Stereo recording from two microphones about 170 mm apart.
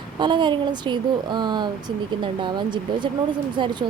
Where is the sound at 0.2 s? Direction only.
30° right (ahead or behind).